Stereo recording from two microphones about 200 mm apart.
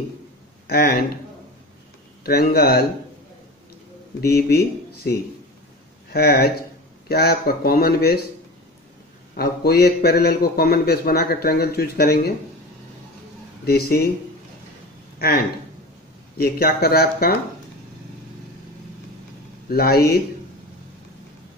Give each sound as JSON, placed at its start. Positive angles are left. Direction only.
{"t": 0.7, "sound": "a man's voice", "side_deg": 50}
{"t": 2.2, "sound": "a man's voice", "side_deg": 50}
{"t": 4.2, "sound": "a man's voice", "side_deg": 50}
{"t": 6.1, "sound": "a man's voice", "side_deg": 50}
{"t": 9.4, "sound": "a man's voice", "side_deg": 50}
{"t": 13.7, "sound": "a man's voice", "side_deg": 50}
{"t": 15.1, "sound": "a man's voice", "side_deg": 50}
{"t": 19.7, "sound": "a man's voice", "side_deg": 50}